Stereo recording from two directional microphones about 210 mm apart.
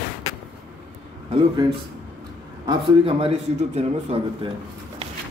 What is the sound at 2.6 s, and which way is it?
Speech, 20° right (ahead or behind).